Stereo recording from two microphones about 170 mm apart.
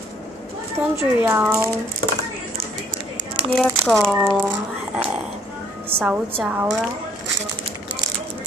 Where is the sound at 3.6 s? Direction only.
5° left (ahead or behind).